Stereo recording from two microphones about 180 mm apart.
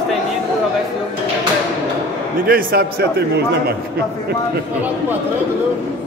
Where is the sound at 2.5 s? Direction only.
55° right (ahead or behind).